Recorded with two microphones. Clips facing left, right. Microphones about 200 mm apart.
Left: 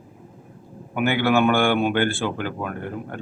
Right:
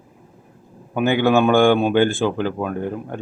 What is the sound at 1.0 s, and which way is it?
A man's voice, 15° right (ahead or behind).